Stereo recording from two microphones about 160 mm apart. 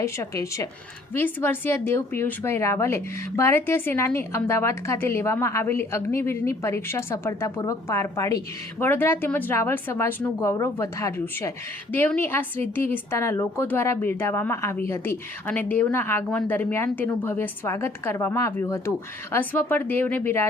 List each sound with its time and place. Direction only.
0.0 s a woman's voice: 20° left (ahead or behind)